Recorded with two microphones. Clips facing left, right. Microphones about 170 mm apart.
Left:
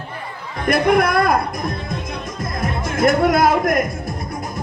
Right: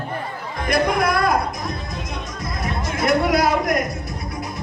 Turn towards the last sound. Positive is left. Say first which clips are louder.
# left 3 dB
turn(degrees=50)  # may be behind; listen again after turning